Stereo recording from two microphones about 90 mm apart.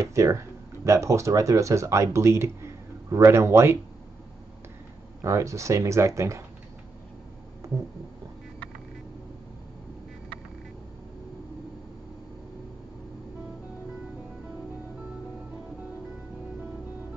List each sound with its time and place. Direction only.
0.0 s speech: 35° right (ahead or behind)
5.2 s speech: 35° right (ahead or behind)